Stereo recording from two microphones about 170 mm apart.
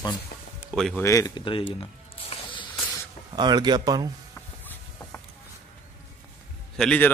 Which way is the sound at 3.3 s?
25° right (ahead or behind).